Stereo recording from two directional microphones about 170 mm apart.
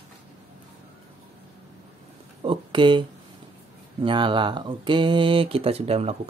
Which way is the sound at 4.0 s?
30° right (ahead or behind).